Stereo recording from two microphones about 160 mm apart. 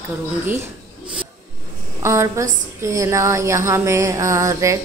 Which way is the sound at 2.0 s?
15° right (ahead or behind).